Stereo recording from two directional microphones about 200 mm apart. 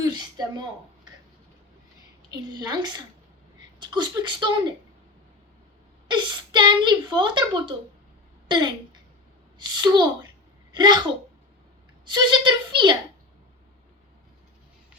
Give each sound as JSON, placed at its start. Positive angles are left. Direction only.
{"t": 0.0, "sound": "a sound", "side_deg": -20}
{"t": 2.3, "sound": "a woman's voice", "side_deg": -20}
{"t": 6.1, "sound": "a woman's voice", "side_deg": -25}